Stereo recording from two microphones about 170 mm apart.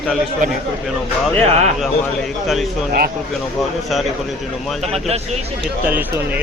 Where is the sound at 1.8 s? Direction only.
Centre (ahead or behind).